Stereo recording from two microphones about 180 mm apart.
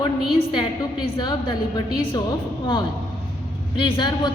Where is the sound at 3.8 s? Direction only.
25° left (ahead or behind).